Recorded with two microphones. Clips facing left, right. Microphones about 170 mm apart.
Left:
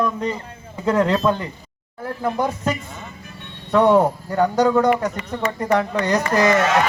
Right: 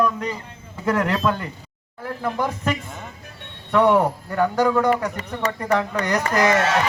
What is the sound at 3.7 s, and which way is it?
A man's voice, 20° left (ahead or behind).